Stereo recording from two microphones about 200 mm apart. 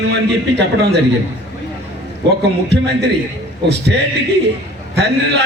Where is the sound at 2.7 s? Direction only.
60° right (ahead or behind).